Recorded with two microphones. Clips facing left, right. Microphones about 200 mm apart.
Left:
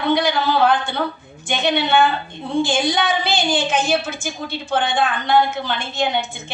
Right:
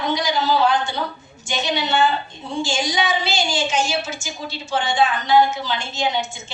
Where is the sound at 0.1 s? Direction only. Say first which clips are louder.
Left 3 dB; 55° left (ahead or behind).